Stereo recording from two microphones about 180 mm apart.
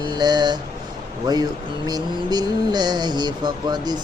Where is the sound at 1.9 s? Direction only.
25° right (ahead or behind).